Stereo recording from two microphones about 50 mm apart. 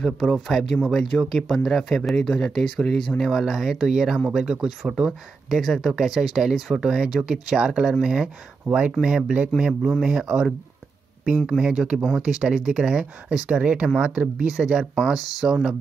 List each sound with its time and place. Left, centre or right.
0.0 s speech: centre; by 9.5 s right
9.7 s speech: centre